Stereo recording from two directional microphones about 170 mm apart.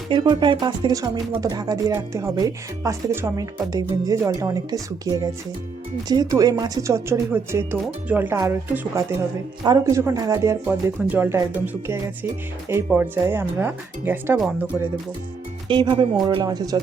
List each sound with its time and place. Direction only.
0.1 s speech: 25° right (ahead or behind)
15.7 s speech: 30° right (ahead or behind)